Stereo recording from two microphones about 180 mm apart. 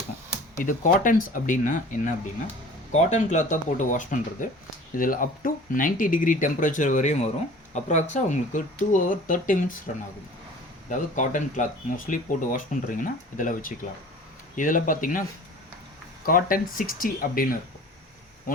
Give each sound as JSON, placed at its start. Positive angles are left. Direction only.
{"t": 0.5, "sound": "speech", "side_deg": 45}
{"t": 16.2, "sound": "speech", "side_deg": 50}